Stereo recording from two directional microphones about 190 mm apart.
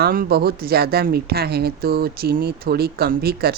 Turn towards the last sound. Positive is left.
turn(degrees=-55)  # may be behind; listen again after turning